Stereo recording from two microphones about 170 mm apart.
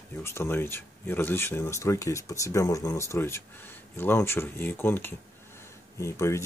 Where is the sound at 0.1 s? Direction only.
15° left (ahead or behind).